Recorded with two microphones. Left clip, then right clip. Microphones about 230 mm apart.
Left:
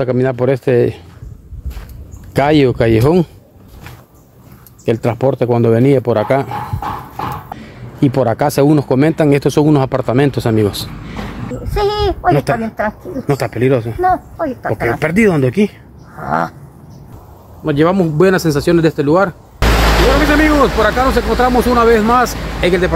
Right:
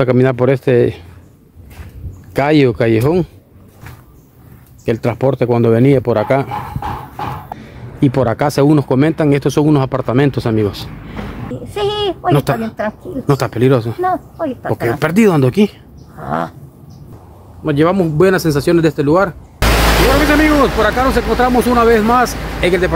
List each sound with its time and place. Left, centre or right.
0.0 s speech: centre
2.3 s speech: centre
4.8 s speech: centre
11.6 s speech: centre
17.6 s speech: centre
19.6 s vehicle: right
20.2 s speech: centre